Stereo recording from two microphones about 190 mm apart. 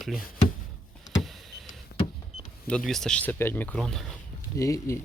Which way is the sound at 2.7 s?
5° left (ahead or behind).